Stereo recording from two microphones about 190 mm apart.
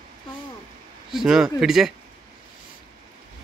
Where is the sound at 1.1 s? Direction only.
Centre (ahead or behind).